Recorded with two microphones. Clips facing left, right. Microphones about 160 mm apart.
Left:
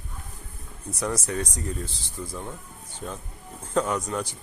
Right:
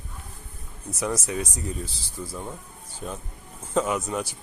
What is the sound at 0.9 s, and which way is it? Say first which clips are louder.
Speech: even; 5° right (ahead or behind).